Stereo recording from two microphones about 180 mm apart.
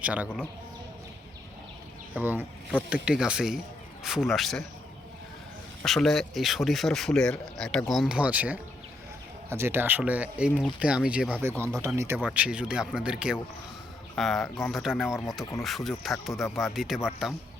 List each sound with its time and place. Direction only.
0.0 s speech: 5° right (ahead or behind)
2.1 s speech: 10° right (ahead or behind)
5.8 s speech: centre (ahead or behind)
11.6 s speech: 15° right (ahead or behind)